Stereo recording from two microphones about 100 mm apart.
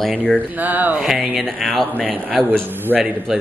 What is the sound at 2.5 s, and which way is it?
Speech, 20° right (ahead or behind).